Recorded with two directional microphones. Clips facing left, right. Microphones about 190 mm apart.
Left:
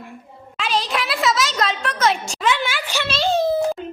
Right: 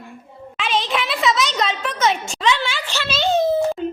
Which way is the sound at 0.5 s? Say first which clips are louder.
Right 1 dB; centre (ahead or behind).